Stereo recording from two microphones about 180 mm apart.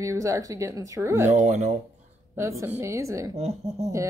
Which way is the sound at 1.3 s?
40° right (ahead or behind).